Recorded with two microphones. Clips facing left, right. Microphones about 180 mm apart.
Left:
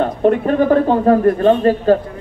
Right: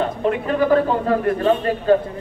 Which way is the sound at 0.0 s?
45° left (ahead or behind).